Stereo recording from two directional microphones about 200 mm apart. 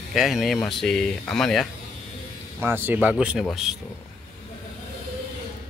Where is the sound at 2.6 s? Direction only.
10° right (ahead or behind).